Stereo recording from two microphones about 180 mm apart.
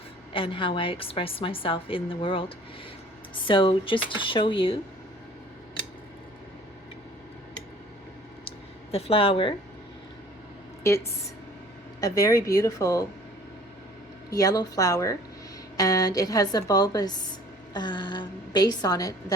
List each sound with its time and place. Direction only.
0.3 s a woman's voice: 30° left (ahead or behind)
8.4 s a sound: 35° left (ahead or behind)
10.8 s a woman's voice: 15° left (ahead or behind)
14.3 s a woman's voice: 20° left (ahead or behind)